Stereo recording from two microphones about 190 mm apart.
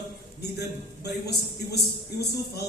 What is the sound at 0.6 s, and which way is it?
Speech, 60° left (ahead or behind).